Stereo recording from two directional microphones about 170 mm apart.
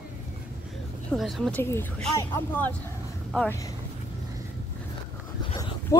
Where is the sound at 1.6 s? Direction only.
15° left (ahead or behind).